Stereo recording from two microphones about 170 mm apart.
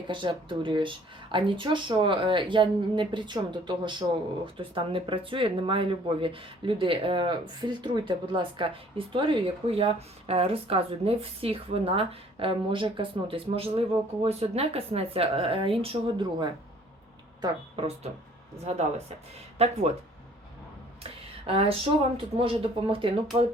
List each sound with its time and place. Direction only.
0.1 s speech: 30° right (ahead or behind)
21.0 s a sound: 35° right (ahead or behind)
22.2 s speech: 30° right (ahead or behind)